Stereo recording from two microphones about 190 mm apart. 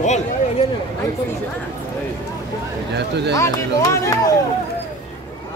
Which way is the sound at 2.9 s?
65° right (ahead or behind).